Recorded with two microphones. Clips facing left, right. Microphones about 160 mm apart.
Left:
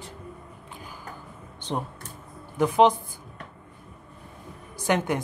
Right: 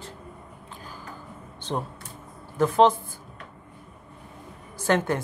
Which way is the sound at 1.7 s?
15° left (ahead or behind).